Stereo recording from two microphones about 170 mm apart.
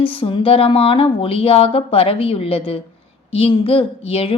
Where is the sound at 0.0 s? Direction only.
30° left (ahead or behind).